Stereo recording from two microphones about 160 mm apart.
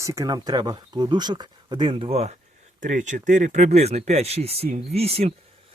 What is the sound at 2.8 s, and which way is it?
Speech, 50° right (ahead or behind).